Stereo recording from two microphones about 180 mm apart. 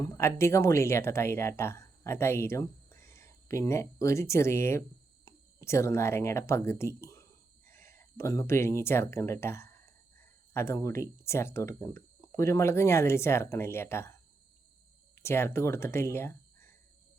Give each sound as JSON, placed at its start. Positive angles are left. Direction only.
{"t": 0.0, "sound": "speech", "side_deg": 15}